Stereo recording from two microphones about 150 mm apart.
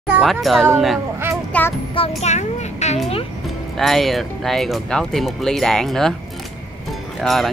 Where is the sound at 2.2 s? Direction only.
50° left (ahead or behind).